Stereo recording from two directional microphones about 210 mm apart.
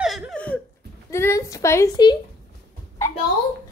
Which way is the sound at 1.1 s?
15° left (ahead or behind).